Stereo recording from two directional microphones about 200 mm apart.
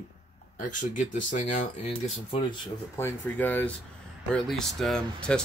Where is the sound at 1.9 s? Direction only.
25° left (ahead or behind).